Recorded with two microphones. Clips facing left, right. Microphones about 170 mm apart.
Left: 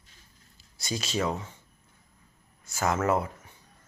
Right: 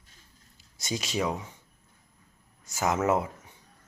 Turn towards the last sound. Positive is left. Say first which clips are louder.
# even
turn(degrees=-20)  # may be behind; listen again after turning